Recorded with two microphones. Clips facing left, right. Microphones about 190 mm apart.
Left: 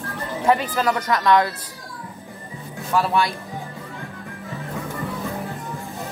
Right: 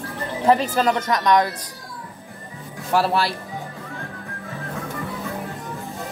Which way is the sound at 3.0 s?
35° right (ahead or behind).